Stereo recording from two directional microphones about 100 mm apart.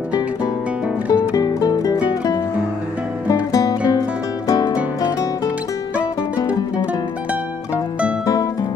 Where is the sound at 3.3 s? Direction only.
35° left (ahead or behind).